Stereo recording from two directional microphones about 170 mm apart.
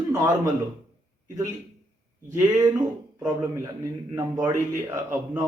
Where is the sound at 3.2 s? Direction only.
15° right (ahead or behind).